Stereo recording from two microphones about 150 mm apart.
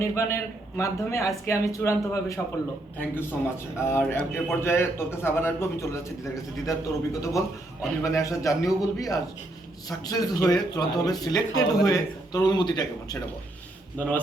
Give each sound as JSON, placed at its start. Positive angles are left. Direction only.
{"t": 0.0, "sound": "a man's voice", "side_deg": 20}
{"t": 3.8, "sound": "a man's voice", "side_deg": 15}